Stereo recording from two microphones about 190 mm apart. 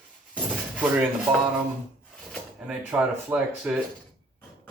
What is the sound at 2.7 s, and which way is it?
Speech, 5° right (ahead or behind).